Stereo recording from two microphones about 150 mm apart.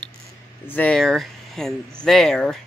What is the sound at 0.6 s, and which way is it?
Speech, 10° left (ahead or behind).